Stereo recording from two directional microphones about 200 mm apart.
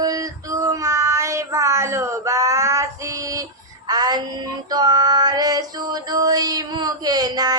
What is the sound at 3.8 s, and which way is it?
Music, 20° right (ahead or behind).